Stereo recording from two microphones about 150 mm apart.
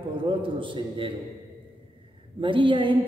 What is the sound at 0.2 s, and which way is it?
Speech, 35° right (ahead or behind).